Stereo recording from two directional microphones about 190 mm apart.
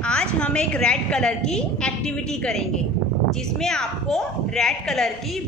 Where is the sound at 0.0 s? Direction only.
5° left (ahead or behind).